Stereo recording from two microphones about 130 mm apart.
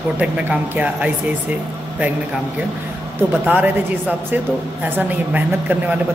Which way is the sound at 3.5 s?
15° right (ahead or behind).